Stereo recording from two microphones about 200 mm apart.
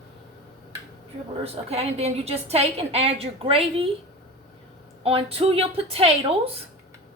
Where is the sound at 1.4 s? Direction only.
30° right (ahead or behind).